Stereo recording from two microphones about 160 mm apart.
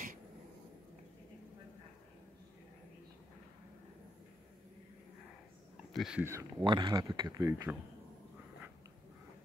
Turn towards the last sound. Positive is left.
turn(degrees=-20)  # may be behind; listen again after turning